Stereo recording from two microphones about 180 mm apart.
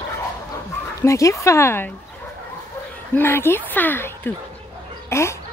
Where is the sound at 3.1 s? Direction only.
10° left (ahead or behind).